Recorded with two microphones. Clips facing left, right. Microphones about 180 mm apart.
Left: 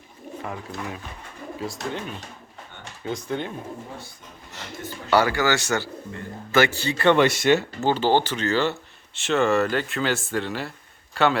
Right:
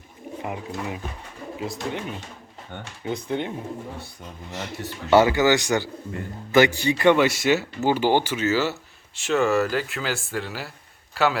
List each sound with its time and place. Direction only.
0.4 s speech: 20° right (ahead or behind)
5.1 s a man's voice: 20° right (ahead or behind); by 11.3 s 5° right (ahead or behind)